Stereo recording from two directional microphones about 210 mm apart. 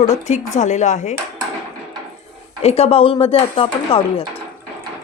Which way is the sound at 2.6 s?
30° left (ahead or behind).